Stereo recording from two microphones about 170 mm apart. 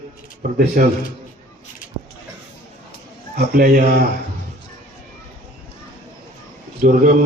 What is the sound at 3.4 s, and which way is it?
Speech, 55° right (ahead or behind).